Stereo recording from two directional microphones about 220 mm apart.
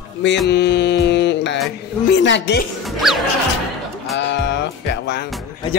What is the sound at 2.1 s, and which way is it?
Speech, 55° left (ahead or behind).